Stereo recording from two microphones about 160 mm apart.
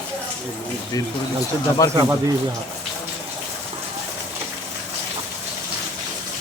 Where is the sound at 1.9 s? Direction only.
20° right (ahead or behind).